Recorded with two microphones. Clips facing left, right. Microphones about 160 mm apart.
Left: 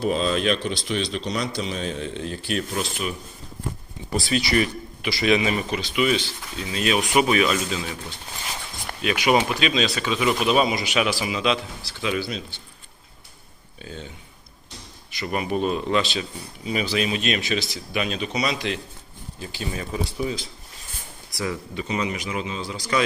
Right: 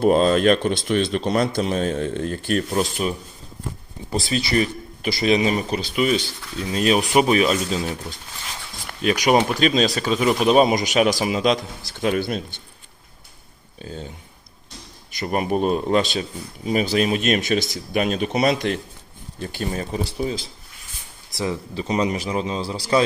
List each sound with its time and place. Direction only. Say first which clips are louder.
0.0 s speech: right 7 dB; 50° right (ahead or behind)
9.0 s speech: right 3 dB; 40° right (ahead or behind)
13.7 s speech: right 3 dB; 40° right (ahead or behind)
15.1 s speech: right 3 dB; 45° right (ahead or behind); by 21.8 s 25° right (ahead or behind)
21.8 s speech: right 5 dB; 35° right (ahead or behind)